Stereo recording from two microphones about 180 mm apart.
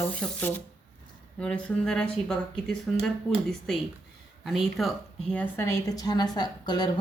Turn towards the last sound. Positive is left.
turn(degrees=25)  # may be behind; listen again after turning